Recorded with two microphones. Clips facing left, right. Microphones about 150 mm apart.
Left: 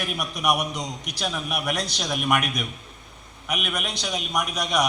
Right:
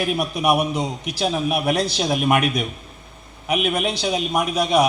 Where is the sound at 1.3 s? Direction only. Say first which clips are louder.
Right 8 dB; 40° right (ahead or behind).